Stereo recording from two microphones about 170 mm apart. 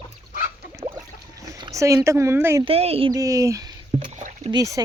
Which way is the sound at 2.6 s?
35° right (ahead or behind).